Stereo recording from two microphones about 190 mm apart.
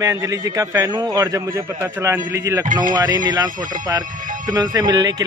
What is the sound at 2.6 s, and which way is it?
Speech, 45° right (ahead or behind).